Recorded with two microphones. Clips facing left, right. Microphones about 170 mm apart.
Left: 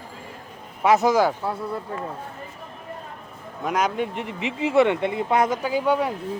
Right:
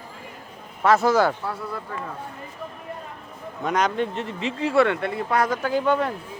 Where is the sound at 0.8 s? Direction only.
15° left (ahead or behind).